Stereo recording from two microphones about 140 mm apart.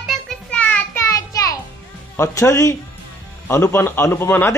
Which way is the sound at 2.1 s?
20° left (ahead or behind).